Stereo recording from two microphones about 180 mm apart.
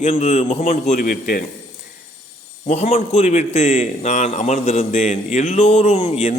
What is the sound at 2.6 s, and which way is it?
A man's voice, 40° left (ahead or behind).